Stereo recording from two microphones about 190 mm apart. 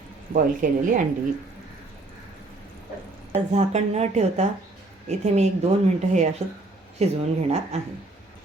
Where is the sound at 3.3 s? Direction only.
35° right (ahead or behind).